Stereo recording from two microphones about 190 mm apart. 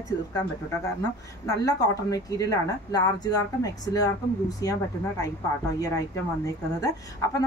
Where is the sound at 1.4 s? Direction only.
20° left (ahead or behind).